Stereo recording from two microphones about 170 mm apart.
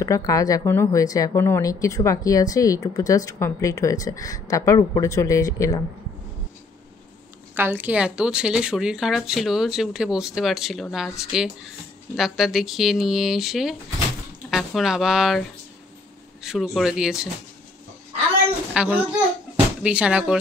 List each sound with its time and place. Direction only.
0.0 s a woman's voice: 20° left (ahead or behind)
7.5 s speech: 10° right (ahead or behind)
16.4 s speech: centre (ahead or behind)
18.7 s a child's voice: 5° right (ahead or behind)